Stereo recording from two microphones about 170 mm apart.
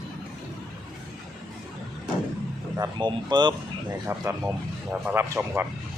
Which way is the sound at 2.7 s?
20° right (ahead or behind).